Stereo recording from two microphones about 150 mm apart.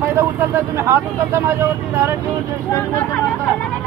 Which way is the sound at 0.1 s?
15° right (ahead or behind).